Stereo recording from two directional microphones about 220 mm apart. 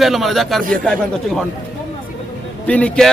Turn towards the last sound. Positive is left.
turn(degrees=5)  # may be behind; listen again after turning